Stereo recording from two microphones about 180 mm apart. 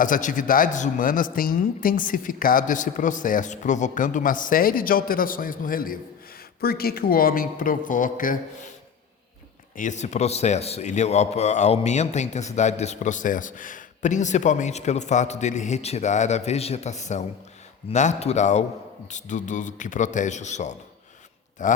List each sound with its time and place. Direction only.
0.0 s speech: 45° left (ahead or behind)
9.7 s a man's voice: 40° left (ahead or behind)